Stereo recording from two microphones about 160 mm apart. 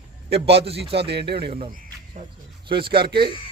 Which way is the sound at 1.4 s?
35° right (ahead or behind).